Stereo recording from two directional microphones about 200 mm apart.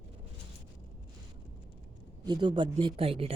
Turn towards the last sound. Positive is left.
turn(degrees=-30)  # may be behind; listen again after turning